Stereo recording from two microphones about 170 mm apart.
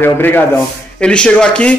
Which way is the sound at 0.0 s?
10° left (ahead or behind).